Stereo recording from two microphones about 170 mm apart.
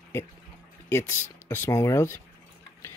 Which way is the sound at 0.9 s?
15° left (ahead or behind).